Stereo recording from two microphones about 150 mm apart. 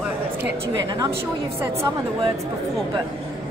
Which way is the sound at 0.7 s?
25° right (ahead or behind).